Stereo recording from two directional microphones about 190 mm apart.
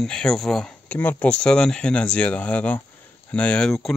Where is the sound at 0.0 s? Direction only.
5° left (ahead or behind).